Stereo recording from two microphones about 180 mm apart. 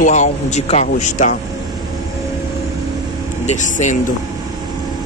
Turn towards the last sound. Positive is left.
turn(degrees=40)  # may be behind; listen again after turning